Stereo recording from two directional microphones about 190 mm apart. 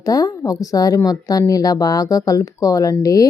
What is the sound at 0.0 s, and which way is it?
Speech, 20° left (ahead or behind).